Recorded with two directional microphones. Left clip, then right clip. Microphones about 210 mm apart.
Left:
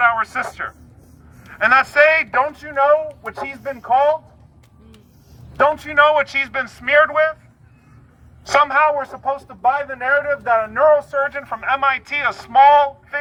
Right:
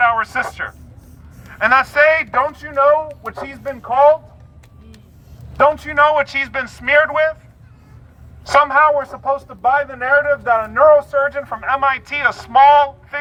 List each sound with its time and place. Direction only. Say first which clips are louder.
0.0 s a man's voice: right 1 dB; 5° left (ahead or behind)
5.5 s a man's voice: right 1 dB; 5° left (ahead or behind)
8.4 s a man's voice: right 3 dB; centre (ahead or behind)